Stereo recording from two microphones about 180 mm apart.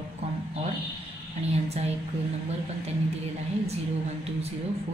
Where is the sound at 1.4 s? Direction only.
35° right (ahead or behind).